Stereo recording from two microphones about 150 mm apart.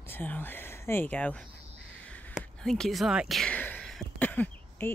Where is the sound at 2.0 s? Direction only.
10° left (ahead or behind).